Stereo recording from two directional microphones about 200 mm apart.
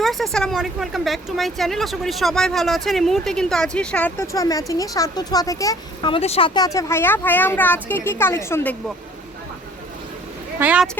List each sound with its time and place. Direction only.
0.0 s speech: centre (ahead or behind)
10.6 s speech: 5° right (ahead or behind)